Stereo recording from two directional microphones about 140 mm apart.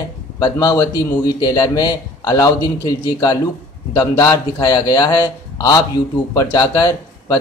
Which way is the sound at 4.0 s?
25° left (ahead or behind).